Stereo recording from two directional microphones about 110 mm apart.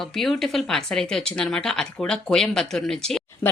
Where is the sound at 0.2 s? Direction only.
5° left (ahead or behind).